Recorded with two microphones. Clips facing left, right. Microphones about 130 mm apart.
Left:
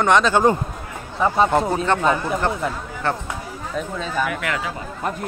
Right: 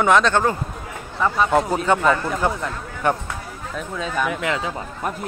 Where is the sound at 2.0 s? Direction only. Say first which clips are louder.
Right 1 dB; 20° left (ahead or behind).